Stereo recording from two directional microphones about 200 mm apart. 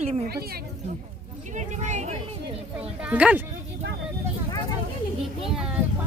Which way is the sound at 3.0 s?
5° right (ahead or behind).